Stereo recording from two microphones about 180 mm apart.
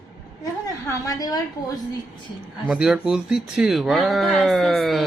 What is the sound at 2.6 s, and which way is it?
Speech, 5° right (ahead or behind).